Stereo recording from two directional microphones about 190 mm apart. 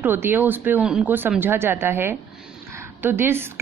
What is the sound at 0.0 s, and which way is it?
Speech, 10° right (ahead or behind).